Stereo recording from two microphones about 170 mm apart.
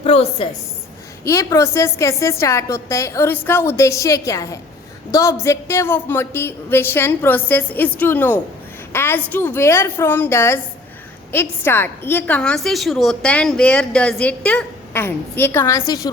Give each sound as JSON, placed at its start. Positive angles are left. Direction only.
{"t": 0.0, "sound": "a woman's voice", "side_deg": 35}
{"t": 1.2, "sound": "a woman's voice", "side_deg": 20}